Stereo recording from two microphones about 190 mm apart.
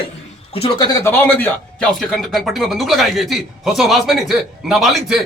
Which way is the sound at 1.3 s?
5° left (ahead or behind).